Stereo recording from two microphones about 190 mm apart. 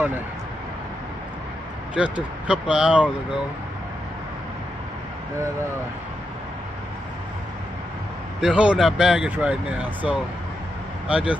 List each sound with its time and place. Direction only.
2.0 s speech: 5° right (ahead or behind)
8.4 s speech: 5° right (ahead or behind)